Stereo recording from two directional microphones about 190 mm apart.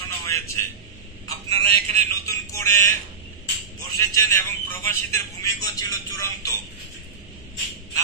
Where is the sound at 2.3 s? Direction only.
15° left (ahead or behind).